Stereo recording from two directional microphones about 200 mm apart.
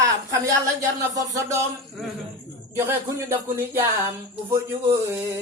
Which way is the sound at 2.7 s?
15° right (ahead or behind).